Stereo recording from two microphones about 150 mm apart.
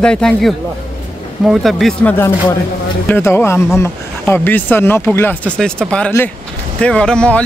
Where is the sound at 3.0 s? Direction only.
15° left (ahead or behind).